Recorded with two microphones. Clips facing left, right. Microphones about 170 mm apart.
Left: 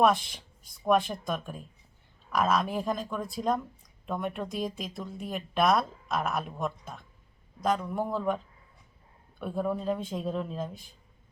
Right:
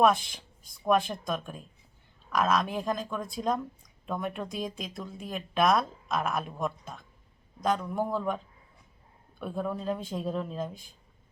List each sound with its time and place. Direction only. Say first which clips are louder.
0.0 s speech: even; centre (ahead or behind)
9.4 s speech: left 2 dB; centre (ahead or behind)